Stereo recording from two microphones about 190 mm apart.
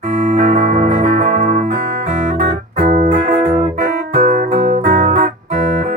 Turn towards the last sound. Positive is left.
turn(degrees=-50)  # may be behind; listen again after turning